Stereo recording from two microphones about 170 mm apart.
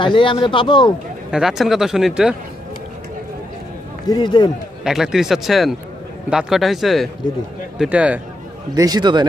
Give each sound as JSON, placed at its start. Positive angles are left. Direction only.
{"t": 0.0, "sound": "speech", "side_deg": 30}
{"t": 1.3, "sound": "speech", "side_deg": -5}
{"t": 4.1, "sound": "speech", "side_deg": 25}
{"t": 4.8, "sound": "speech", "side_deg": -5}
{"t": 8.7, "sound": "a man's voice", "side_deg": -25}